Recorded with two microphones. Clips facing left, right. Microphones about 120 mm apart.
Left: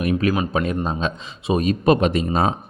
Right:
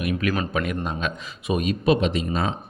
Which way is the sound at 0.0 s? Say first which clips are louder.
Left 4 dB; 35° left (ahead or behind).